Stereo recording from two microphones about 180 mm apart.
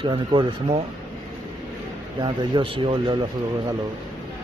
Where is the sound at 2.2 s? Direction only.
25° right (ahead or behind).